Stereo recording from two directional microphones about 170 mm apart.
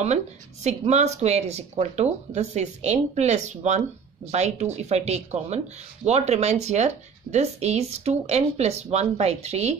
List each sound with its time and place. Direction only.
0.7 s speech: 40° right (ahead or behind)